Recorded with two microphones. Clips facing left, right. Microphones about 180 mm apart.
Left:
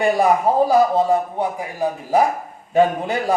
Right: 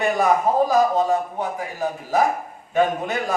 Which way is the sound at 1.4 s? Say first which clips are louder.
Left 3 dB; 10° left (ahead or behind).